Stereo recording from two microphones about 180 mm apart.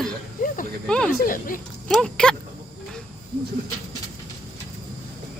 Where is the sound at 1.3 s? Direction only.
50° left (ahead or behind).